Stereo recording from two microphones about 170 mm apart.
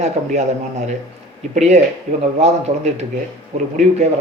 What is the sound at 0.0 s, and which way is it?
Speech, 40° right (ahead or behind).